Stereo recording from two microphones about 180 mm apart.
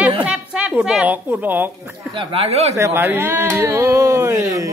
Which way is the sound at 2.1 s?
30° right (ahead or behind).